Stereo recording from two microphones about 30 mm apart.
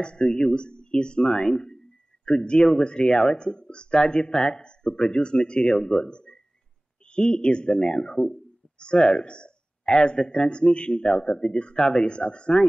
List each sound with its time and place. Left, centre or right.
0.0 s speech: left
1.4 s speech: centre
6.0 s a sound: left
7.1 s speech: left
8.0 s speech: centre
8.7 s speech: left
11.2 s speech: left
12.1 s speech: left